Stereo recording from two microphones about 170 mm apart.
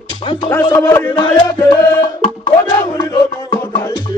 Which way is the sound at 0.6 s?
20° left (ahead or behind).